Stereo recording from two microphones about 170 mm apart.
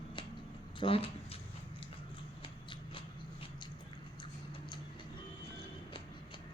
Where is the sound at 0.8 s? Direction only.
30° left (ahead or behind).